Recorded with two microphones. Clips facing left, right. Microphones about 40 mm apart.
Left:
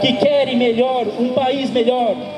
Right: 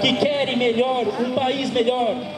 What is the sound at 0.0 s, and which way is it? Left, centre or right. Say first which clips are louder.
A man's voice: left 5 dB; centre.